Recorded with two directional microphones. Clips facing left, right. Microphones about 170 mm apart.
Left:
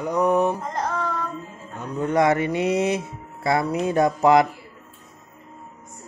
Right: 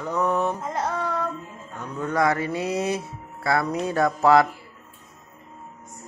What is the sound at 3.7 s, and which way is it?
Speech, 10° left (ahead or behind).